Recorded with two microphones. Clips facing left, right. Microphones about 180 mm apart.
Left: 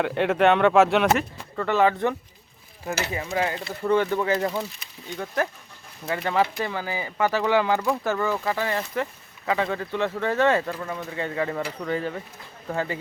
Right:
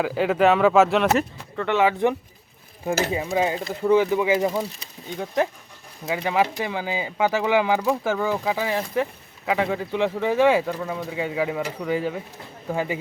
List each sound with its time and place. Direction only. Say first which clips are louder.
0.0 s speech: right 1 dB; centre (ahead or behind)
3.1 s speech: right 4 dB; 20° right (ahead or behind)